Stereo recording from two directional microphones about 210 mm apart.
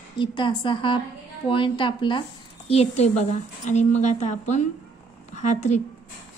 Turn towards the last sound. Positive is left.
turn(degrees=35)  # may be behind; listen again after turning